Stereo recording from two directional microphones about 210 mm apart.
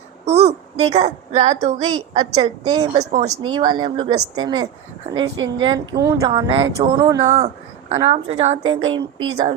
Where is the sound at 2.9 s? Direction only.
30° right (ahead or behind).